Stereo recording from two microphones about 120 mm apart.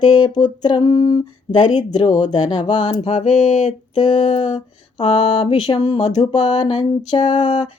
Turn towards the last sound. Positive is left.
turn(degrees=40)  # may be behind; listen again after turning